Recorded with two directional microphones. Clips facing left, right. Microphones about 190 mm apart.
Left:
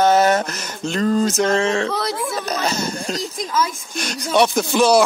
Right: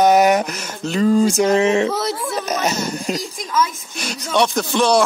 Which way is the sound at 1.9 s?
Centre (ahead or behind).